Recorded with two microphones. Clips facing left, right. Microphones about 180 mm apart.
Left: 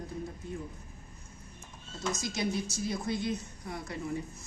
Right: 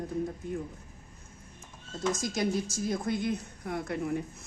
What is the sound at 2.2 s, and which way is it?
A woman's voice, 50° right (ahead or behind).